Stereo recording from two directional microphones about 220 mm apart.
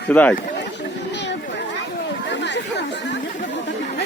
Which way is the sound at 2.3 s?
55° left (ahead or behind).